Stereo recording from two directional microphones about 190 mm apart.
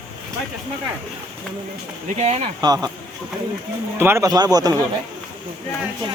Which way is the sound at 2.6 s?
20° right (ahead or behind).